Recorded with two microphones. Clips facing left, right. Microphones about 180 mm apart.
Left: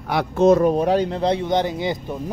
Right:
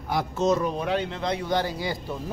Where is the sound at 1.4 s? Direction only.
20° left (ahead or behind).